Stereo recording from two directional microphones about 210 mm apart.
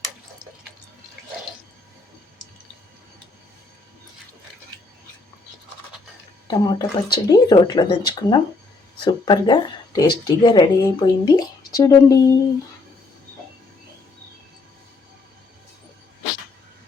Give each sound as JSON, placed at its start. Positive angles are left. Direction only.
{"t": 6.5, "sound": "speech", "side_deg": 20}